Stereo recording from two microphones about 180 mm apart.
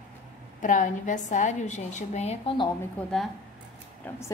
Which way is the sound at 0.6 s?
45° left (ahead or behind).